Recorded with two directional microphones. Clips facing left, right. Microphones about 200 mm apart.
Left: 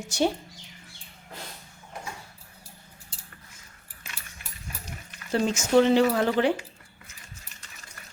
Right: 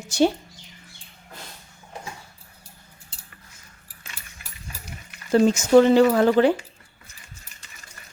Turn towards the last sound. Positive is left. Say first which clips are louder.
# right 6 dB
turn(degrees=-40)  # may be behind; listen again after turning